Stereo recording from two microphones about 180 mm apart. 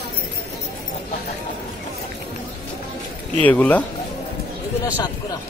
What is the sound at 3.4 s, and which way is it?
Speech, 10° left (ahead or behind).